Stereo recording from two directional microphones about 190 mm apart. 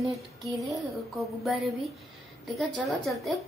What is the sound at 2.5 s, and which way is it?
Speech, centre (ahead or behind).